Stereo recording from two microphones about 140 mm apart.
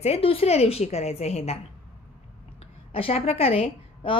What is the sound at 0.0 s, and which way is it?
A woman's voice, 45° left (ahead or behind).